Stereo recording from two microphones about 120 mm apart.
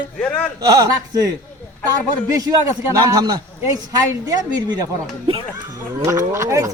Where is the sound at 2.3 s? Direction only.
30° right (ahead or behind).